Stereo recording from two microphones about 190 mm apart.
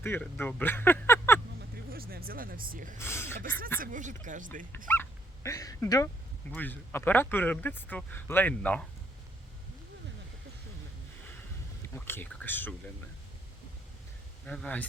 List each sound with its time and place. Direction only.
0.0 s speech: 10° left (ahead or behind)
1.7 s speech: 50° right (ahead or behind)
3.0 s speech: 15° left (ahead or behind)
3.8 s speech: 40° right (ahead or behind)
4.9 s speech: 15° left (ahead or behind)
11.8 s speech: 10° left (ahead or behind)
14.4 s speech: 5° left (ahead or behind)